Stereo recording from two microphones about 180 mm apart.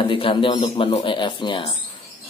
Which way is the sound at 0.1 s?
30° left (ahead or behind).